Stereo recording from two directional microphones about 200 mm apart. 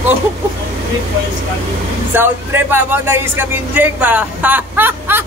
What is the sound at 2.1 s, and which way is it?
Speech, 10° right (ahead or behind).